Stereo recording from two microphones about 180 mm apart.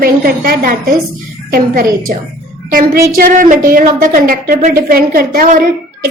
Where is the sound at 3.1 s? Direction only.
50° right (ahead or behind).